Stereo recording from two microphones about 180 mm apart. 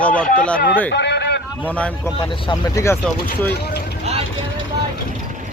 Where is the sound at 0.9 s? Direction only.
70° left (ahead or behind).